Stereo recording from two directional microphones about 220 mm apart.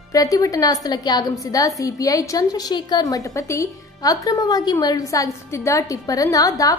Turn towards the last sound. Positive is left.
turn(degrees=15)  # may be behind; listen again after turning